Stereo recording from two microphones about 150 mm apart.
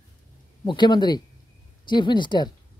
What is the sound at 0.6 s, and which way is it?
A man's voice, 30° left (ahead or behind).